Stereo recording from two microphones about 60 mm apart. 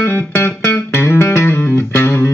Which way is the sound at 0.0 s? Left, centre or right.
Left.